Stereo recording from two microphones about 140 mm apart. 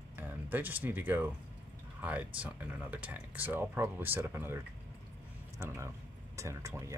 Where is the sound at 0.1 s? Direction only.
15° right (ahead or behind).